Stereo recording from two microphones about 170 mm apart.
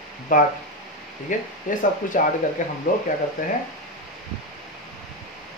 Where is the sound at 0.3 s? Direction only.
50° left (ahead or behind).